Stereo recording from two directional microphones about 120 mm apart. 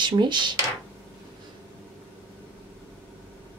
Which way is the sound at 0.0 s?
40° right (ahead or behind).